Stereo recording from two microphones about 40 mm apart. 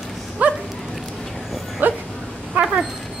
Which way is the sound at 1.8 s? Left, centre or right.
Right.